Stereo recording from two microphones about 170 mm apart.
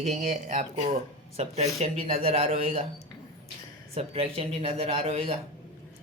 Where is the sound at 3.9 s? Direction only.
35° right (ahead or behind).